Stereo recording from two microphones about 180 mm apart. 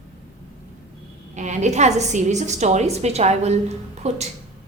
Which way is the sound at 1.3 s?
40° right (ahead or behind).